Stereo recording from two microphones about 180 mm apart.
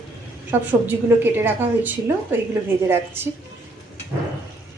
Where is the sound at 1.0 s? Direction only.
10° right (ahead or behind).